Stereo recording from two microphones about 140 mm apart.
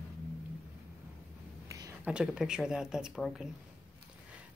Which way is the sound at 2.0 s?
5° right (ahead or behind).